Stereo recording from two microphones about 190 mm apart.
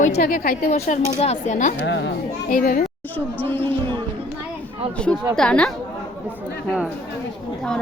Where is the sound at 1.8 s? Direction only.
70° left (ahead or behind).